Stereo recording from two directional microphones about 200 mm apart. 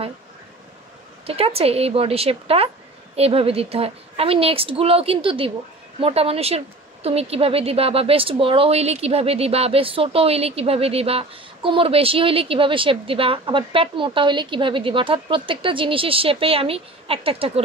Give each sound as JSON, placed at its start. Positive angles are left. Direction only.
{"t": 1.2, "sound": "a woman's voice", "side_deg": -30}